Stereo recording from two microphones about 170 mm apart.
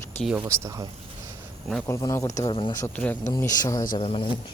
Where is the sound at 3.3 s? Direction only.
20° left (ahead or behind).